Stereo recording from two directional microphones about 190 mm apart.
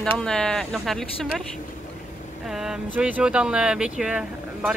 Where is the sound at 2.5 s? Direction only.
5° right (ahead or behind).